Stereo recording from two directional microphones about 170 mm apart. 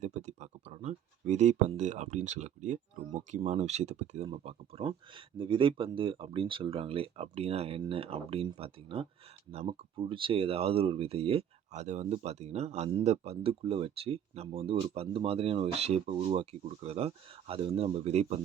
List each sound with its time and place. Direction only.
0.0 s speech: 40° right (ahead or behind)